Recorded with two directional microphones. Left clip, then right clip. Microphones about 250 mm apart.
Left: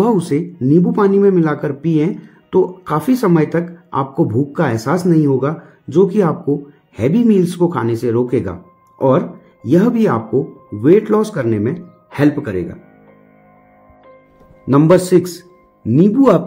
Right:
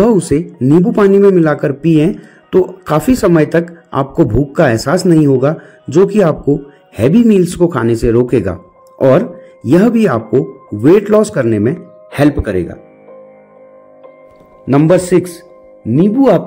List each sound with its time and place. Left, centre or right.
0.0 s speech: centre
14.7 s a man's voice: centre